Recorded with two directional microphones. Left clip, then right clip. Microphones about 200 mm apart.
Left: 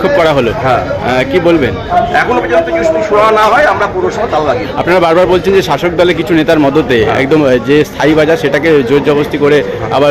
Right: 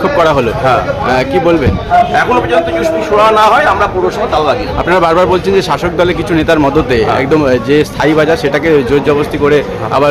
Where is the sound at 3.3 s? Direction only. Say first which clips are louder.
Right 2 dB; 15° right (ahead or behind).